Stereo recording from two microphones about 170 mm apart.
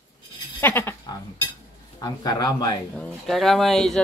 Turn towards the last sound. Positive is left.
turn(degrees=0)  # may be behind; listen again after turning